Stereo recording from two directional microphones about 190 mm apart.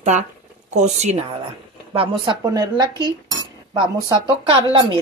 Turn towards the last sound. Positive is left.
turn(degrees=-25)  # may be behind; listen again after turning